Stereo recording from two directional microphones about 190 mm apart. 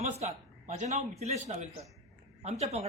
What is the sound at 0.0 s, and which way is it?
A man's voice, 35° right (ahead or behind).